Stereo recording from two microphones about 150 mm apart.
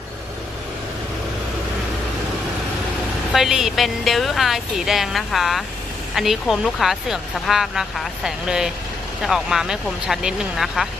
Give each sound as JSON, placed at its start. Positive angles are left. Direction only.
{"t": 3.3, "sound": "speech", "side_deg": -5}